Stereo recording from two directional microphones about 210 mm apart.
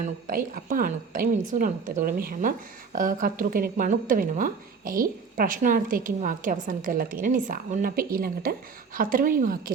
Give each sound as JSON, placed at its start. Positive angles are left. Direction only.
{"t": 0.0, "sound": "a woman's voice", "side_deg": -40}